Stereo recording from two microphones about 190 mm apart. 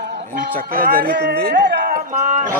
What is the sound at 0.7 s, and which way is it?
Speech, 50° right (ahead or behind).